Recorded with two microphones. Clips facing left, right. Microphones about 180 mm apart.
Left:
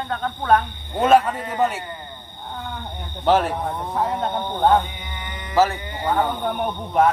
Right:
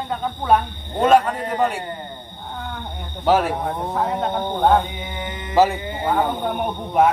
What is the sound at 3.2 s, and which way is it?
Speech, 5° right (ahead or behind).